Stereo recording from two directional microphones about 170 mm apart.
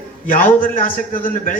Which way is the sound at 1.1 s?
55° left (ahead or behind).